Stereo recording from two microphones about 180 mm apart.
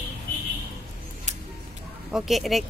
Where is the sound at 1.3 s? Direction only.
40° right (ahead or behind).